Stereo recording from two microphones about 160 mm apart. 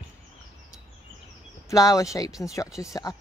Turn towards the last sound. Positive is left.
turn(degrees=20)  # may be behind; listen again after turning